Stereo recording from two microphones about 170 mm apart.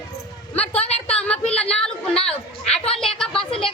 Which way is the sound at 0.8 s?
40° left (ahead or behind).